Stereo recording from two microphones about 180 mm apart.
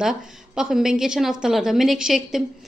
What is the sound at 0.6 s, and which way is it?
A woman's voice, centre (ahead or behind).